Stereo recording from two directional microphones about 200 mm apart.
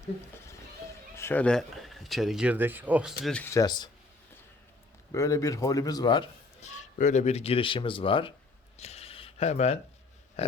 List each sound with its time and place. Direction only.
1.1 s speech: 10° left (ahead or behind)
5.1 s speech: 15° left (ahead or behind)
6.6 s a man's voice: 35° left (ahead or behind)
8.8 s a sound: 30° left (ahead or behind)